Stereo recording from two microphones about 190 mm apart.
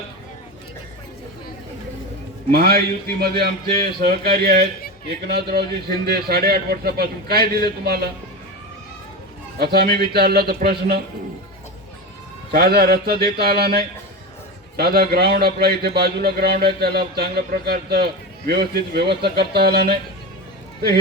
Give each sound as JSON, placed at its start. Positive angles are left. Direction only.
{"t": 2.5, "sound": "a man's voice", "side_deg": -55}
{"t": 9.6, "sound": "a man's voice", "side_deg": -55}
{"t": 12.5, "sound": "a man's voice", "side_deg": -55}